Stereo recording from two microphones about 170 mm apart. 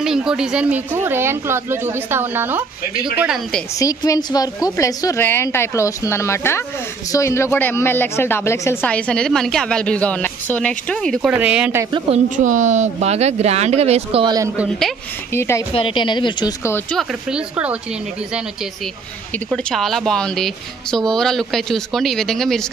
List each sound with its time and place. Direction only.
0.0 s a woman's voice: 5° right (ahead or behind)
3.8 s speech: 20° left (ahead or behind); by 11.3 s 5° left (ahead or behind)
11.3 s speech: 10° right (ahead or behind)
12.4 s speech: 45° right (ahead or behind)
14.2 s a man's voice: 20° right (ahead or behind)
14.6 s a woman's voice: centre (ahead or behind)
15.3 s speech: 15° left (ahead or behind)
15.7 s a woman's voice: 30° left (ahead or behind)
17.3 s speech: 10° right (ahead or behind)
19.5 s a woman's voice: centre (ahead or behind)